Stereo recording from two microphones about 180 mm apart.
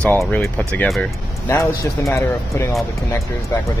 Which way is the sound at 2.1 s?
15° left (ahead or behind).